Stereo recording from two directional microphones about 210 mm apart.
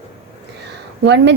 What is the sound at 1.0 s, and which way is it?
Speech, 55° right (ahead or behind).